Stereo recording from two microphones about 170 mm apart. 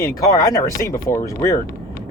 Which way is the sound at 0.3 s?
20° left (ahead or behind).